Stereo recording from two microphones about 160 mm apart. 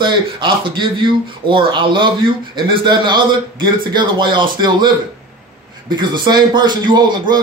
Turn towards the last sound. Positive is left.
turn(degrees=-30)  # may be behind; listen again after turning